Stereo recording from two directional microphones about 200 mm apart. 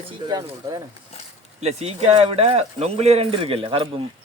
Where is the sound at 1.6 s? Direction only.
30° right (ahead or behind).